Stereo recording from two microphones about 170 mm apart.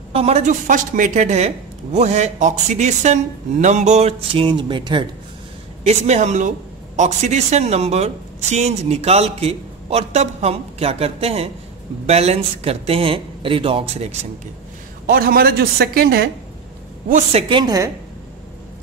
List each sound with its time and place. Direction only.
0.1 s speech: 35° right (ahead or behind)
5.9 s speech: 40° right (ahead or behind)
15.0 s speech: 60° right (ahead or behind)
17.1 s a woman's voice: 35° right (ahead or behind); by 17.9 s 20° right (ahead or behind)